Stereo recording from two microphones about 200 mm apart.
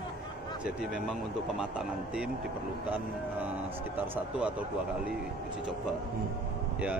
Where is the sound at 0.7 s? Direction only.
5° right (ahead or behind).